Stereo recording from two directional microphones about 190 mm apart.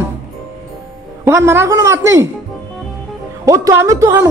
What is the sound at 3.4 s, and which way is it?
Speech, 15° right (ahead or behind).